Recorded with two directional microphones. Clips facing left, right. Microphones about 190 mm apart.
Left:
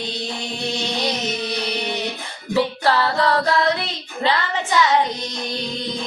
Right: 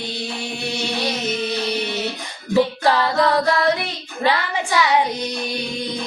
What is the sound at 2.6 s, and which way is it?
Child singing, 15° right (ahead or behind).